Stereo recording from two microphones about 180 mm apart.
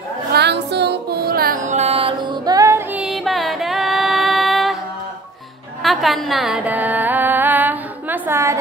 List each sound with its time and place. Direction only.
0.3 s music: 70° right (ahead or behind); by 3.0 s 15° right (ahead or behind)
3.0 s music: centre (ahead or behind)
5.8 s a sound: centre (ahead or behind)